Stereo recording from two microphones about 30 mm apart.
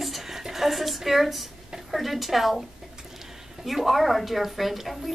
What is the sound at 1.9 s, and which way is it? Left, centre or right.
Wail, centre.